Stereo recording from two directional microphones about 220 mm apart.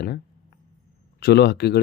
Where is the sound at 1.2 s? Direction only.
50° left (ahead or behind).